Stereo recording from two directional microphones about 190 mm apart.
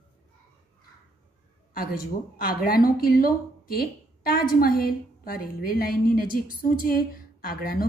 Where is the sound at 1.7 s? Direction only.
50° left (ahead or behind).